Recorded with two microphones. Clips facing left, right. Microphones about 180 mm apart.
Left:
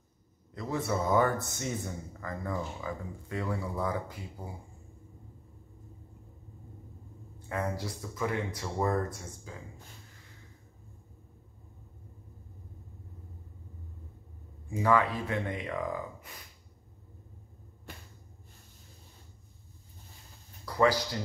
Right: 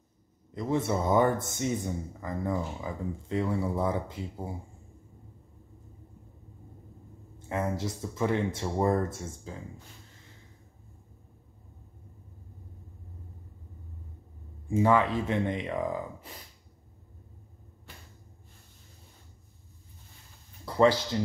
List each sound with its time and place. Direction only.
0.6 s speech: 25° right (ahead or behind)
7.4 s speech: 25° right (ahead or behind)
14.7 s speech: 25° right (ahead or behind)
20.6 s a sound: 25° right (ahead or behind)
21.1 s speech: 25° right (ahead or behind)